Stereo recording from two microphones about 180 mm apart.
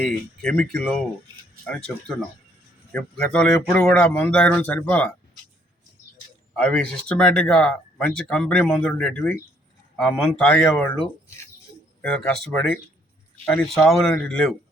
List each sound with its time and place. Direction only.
0.0 s speech: 5° left (ahead or behind)
6.6 s speech: 5° left (ahead or behind)